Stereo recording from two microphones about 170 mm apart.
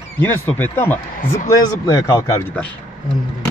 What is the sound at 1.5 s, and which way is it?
Speech, 25° left (ahead or behind).